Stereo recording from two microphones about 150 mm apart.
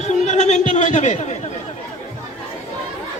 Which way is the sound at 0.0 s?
50° left (ahead or behind).